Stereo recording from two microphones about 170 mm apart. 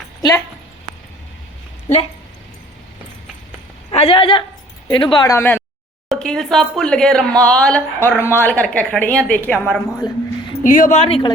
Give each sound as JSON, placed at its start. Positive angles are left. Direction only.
{"t": 3.9, "sound": "speech", "side_deg": 30}
{"t": 6.1, "sound": "speech", "side_deg": 5}
{"t": 10.0, "sound": "speech", "side_deg": 25}
{"t": 10.6, "sound": "speech", "side_deg": 50}